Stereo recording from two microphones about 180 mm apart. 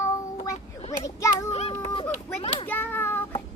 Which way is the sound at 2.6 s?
10° left (ahead or behind).